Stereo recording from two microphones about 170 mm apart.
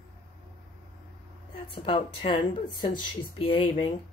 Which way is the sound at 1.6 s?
30° left (ahead or behind).